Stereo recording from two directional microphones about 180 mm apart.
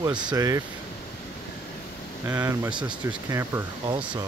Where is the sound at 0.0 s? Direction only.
25° right (ahead or behind).